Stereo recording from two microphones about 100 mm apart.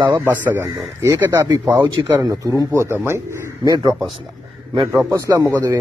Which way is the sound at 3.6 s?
45° right (ahead or behind).